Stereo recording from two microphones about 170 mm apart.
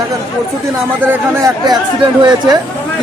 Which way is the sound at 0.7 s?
15° right (ahead or behind).